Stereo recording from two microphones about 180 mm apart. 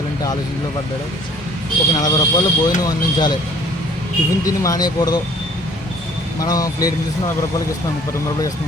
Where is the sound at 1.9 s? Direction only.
20° left (ahead or behind).